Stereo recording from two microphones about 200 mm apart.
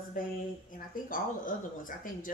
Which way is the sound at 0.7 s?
45° left (ahead or behind).